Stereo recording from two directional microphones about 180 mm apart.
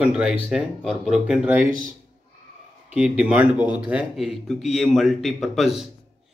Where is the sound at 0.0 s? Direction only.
5° right (ahead or behind).